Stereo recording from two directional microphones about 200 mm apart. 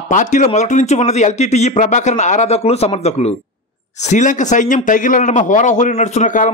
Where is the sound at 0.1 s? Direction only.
40° left (ahead or behind).